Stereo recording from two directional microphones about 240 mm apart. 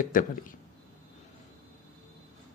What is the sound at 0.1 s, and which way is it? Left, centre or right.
Speech, left.